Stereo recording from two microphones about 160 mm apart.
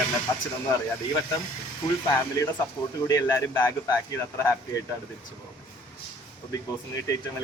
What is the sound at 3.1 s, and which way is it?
Speech, 20° left (ahead or behind).